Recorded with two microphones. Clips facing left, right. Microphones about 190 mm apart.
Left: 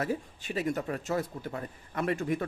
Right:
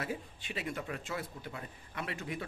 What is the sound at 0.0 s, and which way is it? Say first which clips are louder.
Speech: left 7 dB; 40° left (ahead or behind).